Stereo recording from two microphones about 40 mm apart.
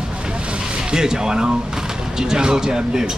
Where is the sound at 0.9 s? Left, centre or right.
Centre.